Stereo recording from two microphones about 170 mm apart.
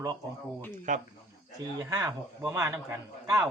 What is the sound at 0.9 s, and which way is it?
Speech, 50° right (ahead or behind).